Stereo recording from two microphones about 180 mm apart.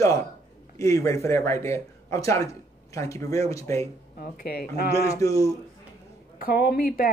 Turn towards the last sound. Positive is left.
turn(degrees=55)  # may be behind; listen again after turning